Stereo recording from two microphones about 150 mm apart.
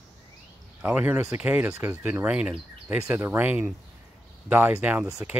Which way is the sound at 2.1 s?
10° right (ahead or behind).